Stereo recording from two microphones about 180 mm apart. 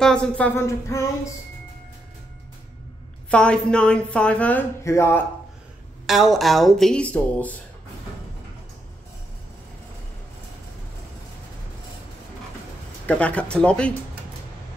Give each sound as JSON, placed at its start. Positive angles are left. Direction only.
{"t": 0.0, "sound": "a woman's voice", "side_deg": 5}
{"t": 0.6, "sound": "speech", "side_deg": 15}
{"t": 3.3, "sound": "a woman's voice", "side_deg": 5}
{"t": 6.0, "sound": "a woman's voice", "side_deg": 0}
{"t": 13.0, "sound": "speech", "side_deg": 5}